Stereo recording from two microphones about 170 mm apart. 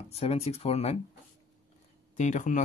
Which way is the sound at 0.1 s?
35° left (ahead or behind).